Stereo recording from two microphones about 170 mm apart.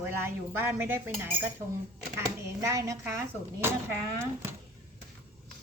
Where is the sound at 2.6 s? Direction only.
15° right (ahead or behind).